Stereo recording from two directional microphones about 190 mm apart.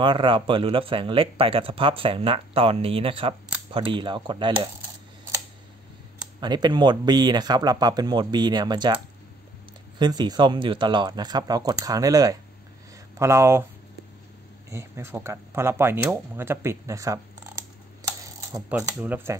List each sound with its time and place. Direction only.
0.0 s speech: 25° right (ahead or behind)
6.4 s speech: 25° right (ahead or behind)
14.7 s speech: 15° right (ahead or behind)
18.0 s coin: 15° right (ahead or behind)